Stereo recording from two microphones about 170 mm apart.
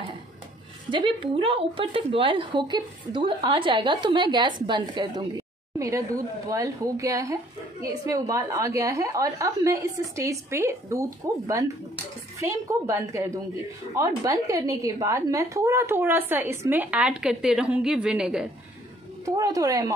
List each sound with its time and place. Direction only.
0.8 s a woman's voice: 30° right (ahead or behind); by 18.5 s 5° right (ahead or behind)
19.2 s speech: 20° right (ahead or behind)